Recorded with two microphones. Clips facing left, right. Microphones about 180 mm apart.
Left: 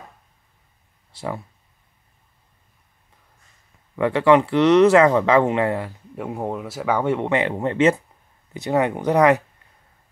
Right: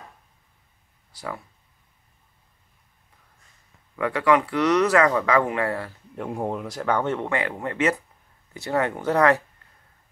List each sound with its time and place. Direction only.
1.1 s speech: 25° left (ahead or behind)
3.9 s speech: 25° left (ahead or behind)
6.1 s speech: 5° left (ahead or behind)